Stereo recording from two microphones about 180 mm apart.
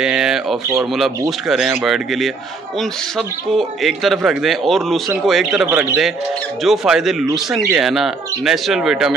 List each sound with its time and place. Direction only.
0.0 s a man's voice: 5° right (ahead or behind)
5.7 s a man's voice: 10° right (ahead or behind)